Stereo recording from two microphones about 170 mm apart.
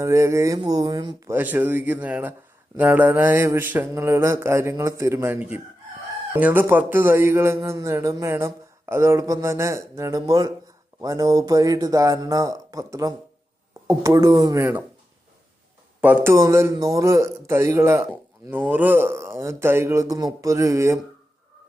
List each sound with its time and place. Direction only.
0.0 s a man's voice: 15° right (ahead or behind)
16.0 s a man's voice: 10° right (ahead or behind)